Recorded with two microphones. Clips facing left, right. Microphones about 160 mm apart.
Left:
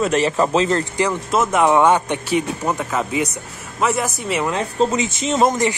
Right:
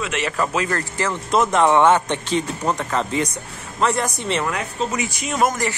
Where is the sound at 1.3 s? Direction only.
5° left (ahead or behind).